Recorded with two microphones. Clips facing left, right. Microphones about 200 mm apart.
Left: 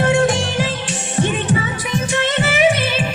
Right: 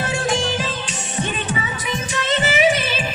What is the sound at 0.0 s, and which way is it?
Music, 60° left (ahead or behind).